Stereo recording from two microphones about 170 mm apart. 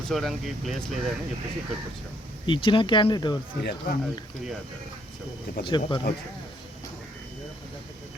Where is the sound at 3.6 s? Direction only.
75° left (ahead or behind).